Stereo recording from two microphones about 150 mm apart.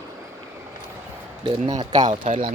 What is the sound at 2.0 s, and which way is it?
Speech, 60° right (ahead or behind).